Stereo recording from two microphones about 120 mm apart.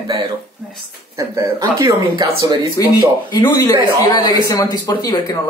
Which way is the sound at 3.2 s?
35° left (ahead or behind).